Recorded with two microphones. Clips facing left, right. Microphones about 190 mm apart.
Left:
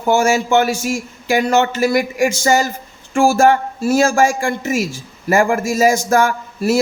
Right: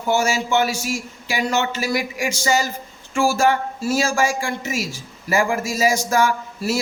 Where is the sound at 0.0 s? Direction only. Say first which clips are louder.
Left 5 dB; 50° left (ahead or behind).